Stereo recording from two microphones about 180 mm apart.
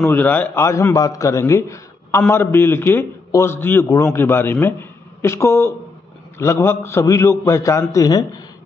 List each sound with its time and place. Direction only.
0.0 s a man's voice: 10° left (ahead or behind)